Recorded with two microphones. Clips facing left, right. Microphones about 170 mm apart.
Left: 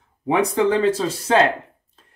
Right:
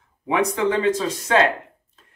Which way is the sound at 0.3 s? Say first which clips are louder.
Left 3 dB; 30° left (ahead or behind).